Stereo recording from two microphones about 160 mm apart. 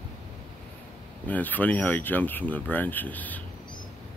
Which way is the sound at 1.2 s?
10° left (ahead or behind).